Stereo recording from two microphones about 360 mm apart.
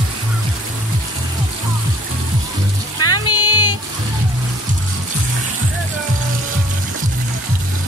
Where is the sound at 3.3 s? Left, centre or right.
Left.